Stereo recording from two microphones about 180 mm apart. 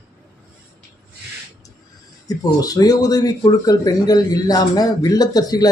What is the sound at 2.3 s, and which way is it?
Speech, 20° left (ahead or behind).